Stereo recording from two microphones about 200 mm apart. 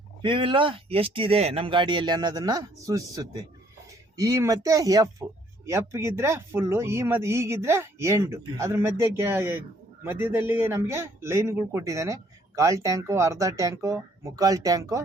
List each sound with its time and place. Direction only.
0.2 s speech: 25° right (ahead or behind)